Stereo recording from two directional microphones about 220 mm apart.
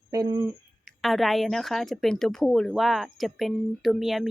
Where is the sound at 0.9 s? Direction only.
Centre (ahead or behind).